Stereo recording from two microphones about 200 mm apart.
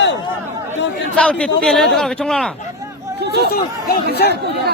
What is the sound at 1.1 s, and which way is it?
Speech, 5° left (ahead or behind).